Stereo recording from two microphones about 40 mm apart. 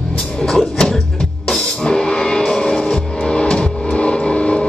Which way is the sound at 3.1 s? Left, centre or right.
Left.